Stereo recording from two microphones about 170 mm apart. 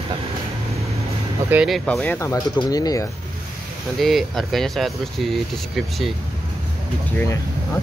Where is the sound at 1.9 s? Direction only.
10° left (ahead or behind).